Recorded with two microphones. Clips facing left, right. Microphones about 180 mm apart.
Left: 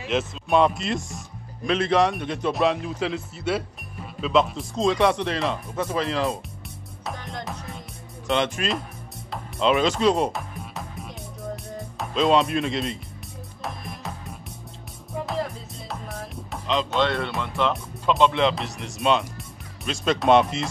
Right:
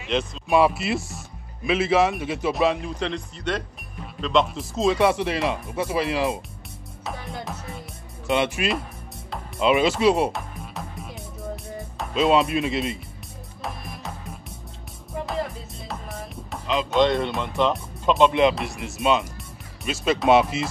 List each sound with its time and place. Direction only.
0.1 s speech: 5° left (ahead or behind)
0.5 s speech: 5° right (ahead or behind)
7.1 s music: 5° right (ahead or behind)
8.3 s speech: 10° right (ahead or behind)
9.3 s music: 5° right (ahead or behind)
15.1 s music: centre (ahead or behind)
16.9 s speech: 15° right (ahead or behind)